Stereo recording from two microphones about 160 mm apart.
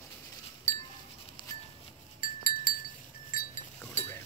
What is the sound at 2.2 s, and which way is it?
Wind chime, 60° left (ahead or behind).